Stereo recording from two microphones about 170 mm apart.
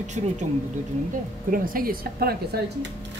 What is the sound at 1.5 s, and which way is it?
Speech, 55° right (ahead or behind).